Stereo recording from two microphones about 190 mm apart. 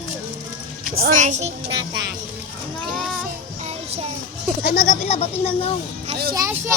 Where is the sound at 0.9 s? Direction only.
45° right (ahead or behind).